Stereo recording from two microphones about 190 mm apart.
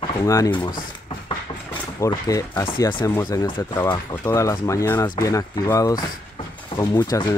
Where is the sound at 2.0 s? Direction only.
15° left (ahead or behind).